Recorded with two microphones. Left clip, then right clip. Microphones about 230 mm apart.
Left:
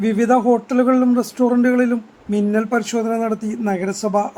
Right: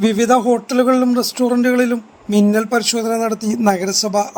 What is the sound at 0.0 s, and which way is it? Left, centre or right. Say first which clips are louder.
A woman's voice: right 2 dB; centre.